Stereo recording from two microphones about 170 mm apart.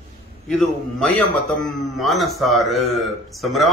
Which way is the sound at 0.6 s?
Centre (ahead or behind).